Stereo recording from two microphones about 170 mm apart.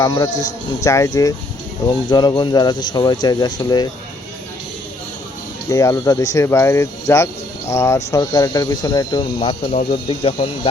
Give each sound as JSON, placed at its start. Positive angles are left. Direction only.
{"t": 0.0, "sound": "speech", "side_deg": 20}
{"t": 5.6, "sound": "speech", "side_deg": 20}